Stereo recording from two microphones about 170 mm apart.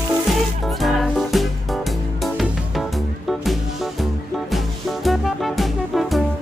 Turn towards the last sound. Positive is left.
turn(degrees=0)  # may be behind; listen again after turning